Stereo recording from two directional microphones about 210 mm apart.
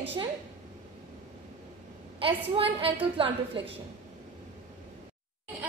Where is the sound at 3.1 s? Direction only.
25° right (ahead or behind).